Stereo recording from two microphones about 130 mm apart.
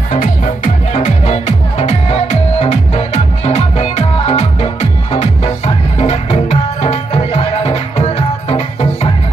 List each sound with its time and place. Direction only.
0.1 s music: 85° left; by 9.1 s 55° left (ahead or behind)